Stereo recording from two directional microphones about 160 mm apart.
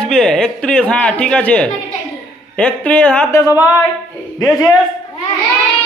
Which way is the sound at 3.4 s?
20° left (ahead or behind).